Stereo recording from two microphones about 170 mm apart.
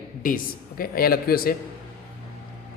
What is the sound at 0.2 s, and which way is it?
A woman's voice, 55° left (ahead or behind).